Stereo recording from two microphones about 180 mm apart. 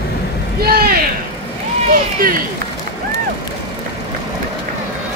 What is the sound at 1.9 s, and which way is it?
Vehicle, 50° right (ahead or behind).